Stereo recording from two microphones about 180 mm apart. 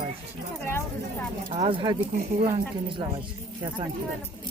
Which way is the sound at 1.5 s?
30° right (ahead or behind).